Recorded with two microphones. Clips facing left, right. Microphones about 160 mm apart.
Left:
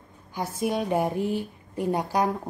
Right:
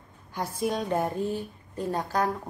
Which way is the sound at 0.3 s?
5° left (ahead or behind).